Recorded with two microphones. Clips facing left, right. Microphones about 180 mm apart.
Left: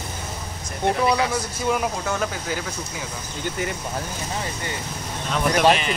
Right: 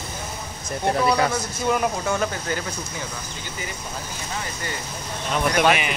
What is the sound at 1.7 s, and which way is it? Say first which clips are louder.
Speech: right 2 dB; centre (ahead or behind).